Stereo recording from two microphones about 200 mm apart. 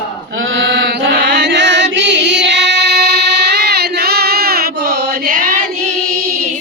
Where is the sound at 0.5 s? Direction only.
60° right (ahead or behind).